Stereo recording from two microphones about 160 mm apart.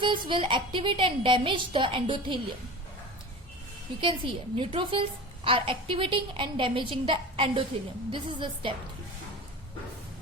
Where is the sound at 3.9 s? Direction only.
30° right (ahead or behind).